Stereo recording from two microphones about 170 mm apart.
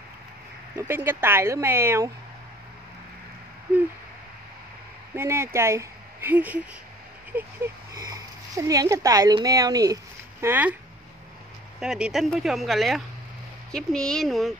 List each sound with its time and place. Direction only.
0.7 s speech: 15° right (ahead or behind)
5.1 s speech: 15° right (ahead or behind)
10.4 s speech: 10° right (ahead or behind)
11.8 s speech: 5° right (ahead or behind)